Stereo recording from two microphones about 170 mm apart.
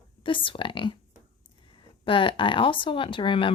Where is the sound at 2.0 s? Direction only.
30° left (ahead or behind).